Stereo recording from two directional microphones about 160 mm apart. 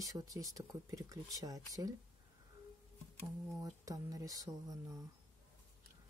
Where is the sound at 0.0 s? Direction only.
20° right (ahead or behind).